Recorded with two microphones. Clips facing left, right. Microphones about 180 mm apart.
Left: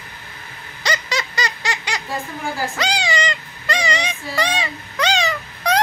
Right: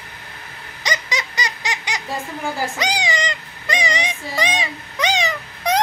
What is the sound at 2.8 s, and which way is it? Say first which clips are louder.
Child singing: left 1 dB; 15° right (ahead or behind).